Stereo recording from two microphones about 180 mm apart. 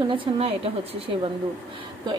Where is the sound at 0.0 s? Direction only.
30° right (ahead or behind).